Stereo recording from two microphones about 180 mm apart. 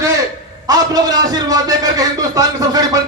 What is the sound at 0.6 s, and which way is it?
Speech, 20° right (ahead or behind).